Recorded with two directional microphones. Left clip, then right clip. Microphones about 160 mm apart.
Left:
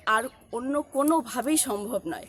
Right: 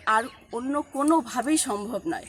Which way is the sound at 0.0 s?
40° left (ahead or behind).